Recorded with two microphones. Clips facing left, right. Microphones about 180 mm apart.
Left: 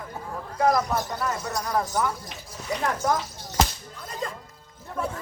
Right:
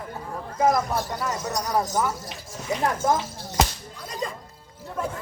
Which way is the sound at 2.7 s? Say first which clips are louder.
Right 2 dB; 25° right (ahead or behind).